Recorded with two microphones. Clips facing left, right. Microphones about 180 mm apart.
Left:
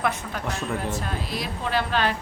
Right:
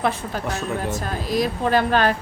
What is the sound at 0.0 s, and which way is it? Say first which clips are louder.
A woman's voice: right 3 dB; 30° right (ahead or behind).